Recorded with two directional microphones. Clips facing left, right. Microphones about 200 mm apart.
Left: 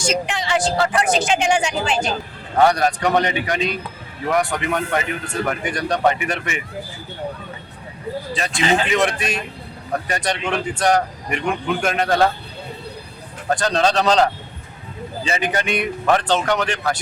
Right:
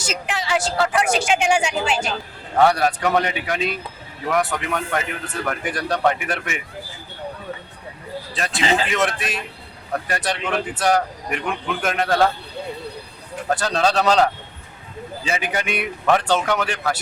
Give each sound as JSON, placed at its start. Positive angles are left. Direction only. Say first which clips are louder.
{"t": 0.0, "sound": "speech", "louder": "left 5 dB", "side_deg": -5}
{"t": 8.3, "sound": "speech", "louder": "left 1 dB", "side_deg": 0}
{"t": 13.5, "sound": "speech", "louder": "left 2 dB", "side_deg": -5}